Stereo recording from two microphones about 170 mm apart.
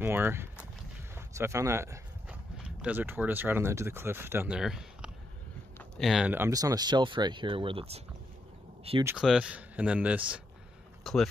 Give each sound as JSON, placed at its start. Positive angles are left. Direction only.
{"t": 0.0, "sound": "speech", "side_deg": -15}
{"t": 1.1, "sound": "a sound", "side_deg": -15}
{"t": 2.5, "sound": "speech", "side_deg": -5}
{"t": 9.0, "sound": "speech", "side_deg": -5}